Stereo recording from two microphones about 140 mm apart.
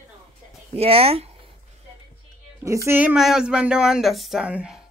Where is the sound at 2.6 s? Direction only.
20° right (ahead or behind).